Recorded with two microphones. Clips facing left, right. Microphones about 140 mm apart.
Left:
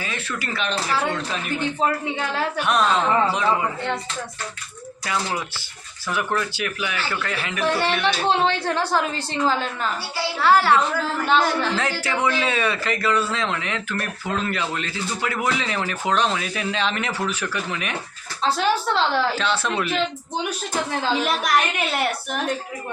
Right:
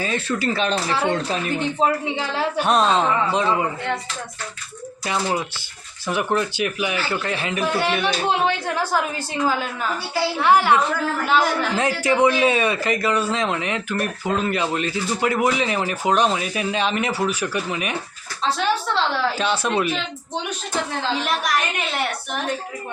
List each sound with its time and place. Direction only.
0.0 s a woman's voice: 30° right (ahead or behind)
5.0 s a woman's voice: 25° right (ahead or behind)
11.3 s a woman's voice: 5° right (ahead or behind)
12.0 s speech: 20° right (ahead or behind)
18.4 s a woman's voice: centre (ahead or behind)
19.4 s speech: 15° right (ahead or behind)
21.2 s a woman's voice: centre (ahead or behind)